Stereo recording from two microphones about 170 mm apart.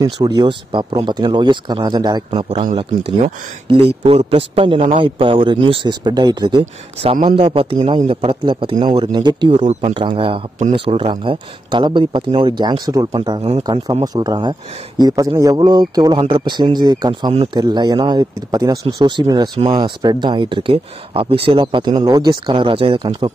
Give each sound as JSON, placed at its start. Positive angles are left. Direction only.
{"t": 0.0, "sound": "speech", "side_deg": -25}
{"t": 6.6, "sound": "speech", "side_deg": -40}
{"t": 9.7, "sound": "speech", "side_deg": -40}